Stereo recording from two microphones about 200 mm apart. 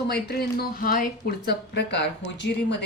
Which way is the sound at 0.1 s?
50° left (ahead or behind).